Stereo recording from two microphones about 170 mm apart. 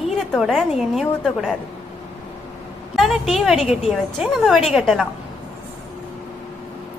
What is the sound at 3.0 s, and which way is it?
A woman's voice, centre (ahead or behind).